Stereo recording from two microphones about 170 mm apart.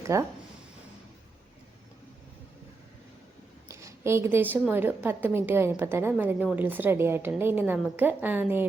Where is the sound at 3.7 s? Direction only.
15° right (ahead or behind).